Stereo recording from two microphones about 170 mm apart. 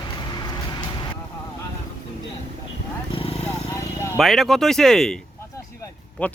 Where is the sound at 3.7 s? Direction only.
15° left (ahead or behind).